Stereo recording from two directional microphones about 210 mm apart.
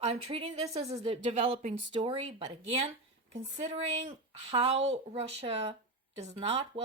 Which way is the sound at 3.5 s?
30° right (ahead or behind).